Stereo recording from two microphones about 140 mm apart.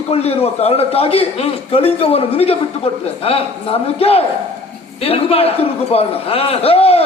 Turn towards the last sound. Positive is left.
turn(degrees=45)  # may be behind; listen again after turning